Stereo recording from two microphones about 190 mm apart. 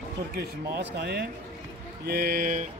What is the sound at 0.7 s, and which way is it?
Speech, 60° right (ahead or behind).